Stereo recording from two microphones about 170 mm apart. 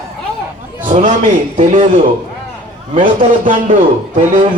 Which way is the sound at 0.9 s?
45° right (ahead or behind).